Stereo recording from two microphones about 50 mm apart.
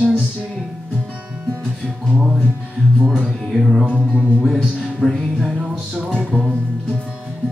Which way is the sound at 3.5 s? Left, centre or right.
Centre.